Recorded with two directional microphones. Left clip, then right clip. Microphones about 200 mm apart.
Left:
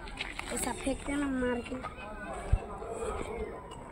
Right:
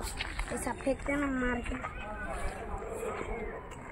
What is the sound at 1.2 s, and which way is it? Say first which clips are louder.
Speech: even; 30° right (ahead or behind).